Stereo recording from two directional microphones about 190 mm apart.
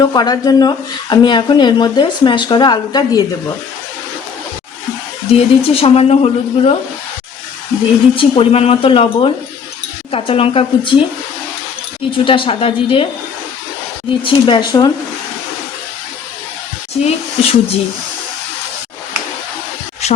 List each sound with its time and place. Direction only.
0.0 s speech: 20° left (ahead or behind)
5.3 s speech: 30° left (ahead or behind)
8.1 s speech: 30° left (ahead or behind)
12.1 s speech: 25° left (ahead or behind)
14.3 s speech: 25° left (ahead or behind)
16.9 s speech: 30° left (ahead or behind)
20.0 s a sound: 35° left (ahead or behind)